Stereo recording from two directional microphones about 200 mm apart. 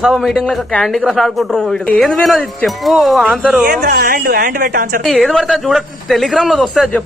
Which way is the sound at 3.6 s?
45° right (ahead or behind).